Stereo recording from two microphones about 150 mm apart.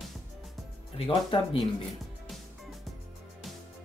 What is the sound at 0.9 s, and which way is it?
Speech, 35° left (ahead or behind).